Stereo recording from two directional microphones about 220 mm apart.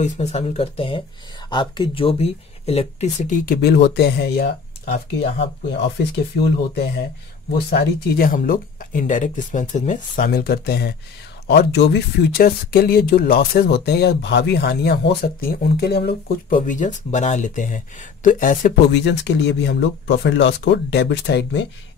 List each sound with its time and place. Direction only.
0.0 s speech: 30° left (ahead or behind); by 4.5 s 50° left (ahead or behind)
5.7 s speech: 50° left (ahead or behind)
18.9 s speech: 50° left (ahead or behind)